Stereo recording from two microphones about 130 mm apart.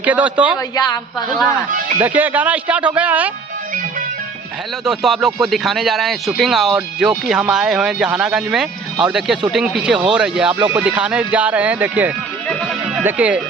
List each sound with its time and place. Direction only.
0.0 s speech: 10° right (ahead or behind)
2.0 s speech: 15° right (ahead or behind)
4.9 s speech: centre (ahead or behind)
10.5 s speech: 15° right (ahead or behind)